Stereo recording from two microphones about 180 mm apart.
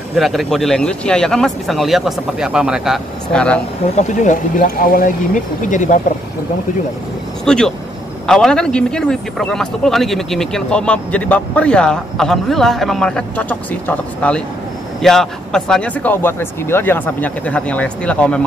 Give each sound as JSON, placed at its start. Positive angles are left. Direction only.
{"t": 0.1, "sound": "a man's voice", "side_deg": 0}
{"t": 3.9, "sound": "speech", "side_deg": 40}
{"t": 7.4, "sound": "a man's voice", "side_deg": 5}